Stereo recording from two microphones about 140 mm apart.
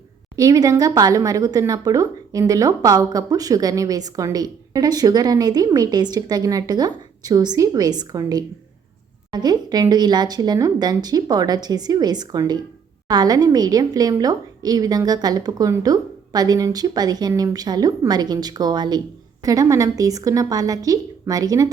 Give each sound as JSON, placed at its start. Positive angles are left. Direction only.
{"t": 0.3, "sound": "a woman's voice", "side_deg": -25}